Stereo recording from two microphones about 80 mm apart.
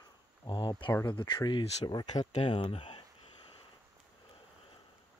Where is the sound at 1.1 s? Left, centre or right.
Left.